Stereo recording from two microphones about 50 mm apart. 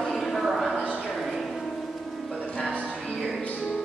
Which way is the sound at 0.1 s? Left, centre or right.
Centre.